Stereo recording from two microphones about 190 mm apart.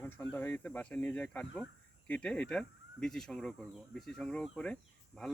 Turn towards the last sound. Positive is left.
turn(degrees=5)  # may be behind; listen again after turning